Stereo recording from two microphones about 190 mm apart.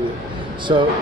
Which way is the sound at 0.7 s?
25° right (ahead or behind).